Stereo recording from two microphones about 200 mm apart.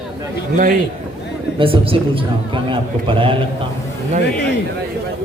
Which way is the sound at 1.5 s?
25° right (ahead or behind).